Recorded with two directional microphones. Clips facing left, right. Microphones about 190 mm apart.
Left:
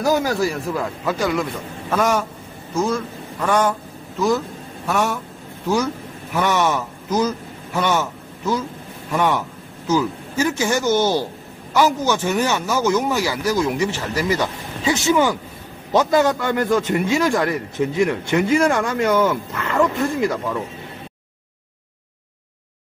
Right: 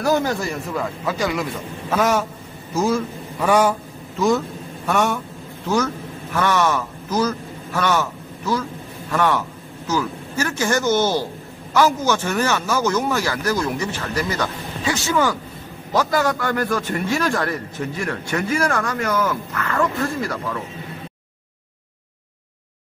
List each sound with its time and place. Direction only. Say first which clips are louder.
0.0 s a man's voice: left 1 dB; 10° left (ahead or behind); by 3.7 s 10° right (ahead or behind)
4.8 s a man's voice: right 1 dB; centre (ahead or behind)
6.3 s a man's voice: even; 15° left (ahead or behind)